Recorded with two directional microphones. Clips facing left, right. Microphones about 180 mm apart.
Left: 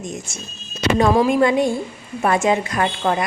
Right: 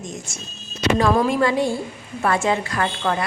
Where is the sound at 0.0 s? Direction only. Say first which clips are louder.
Left 3 dB; 20° left (ahead or behind).